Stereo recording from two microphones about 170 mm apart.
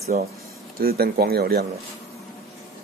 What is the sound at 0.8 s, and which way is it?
Speech, 65° right (ahead or behind).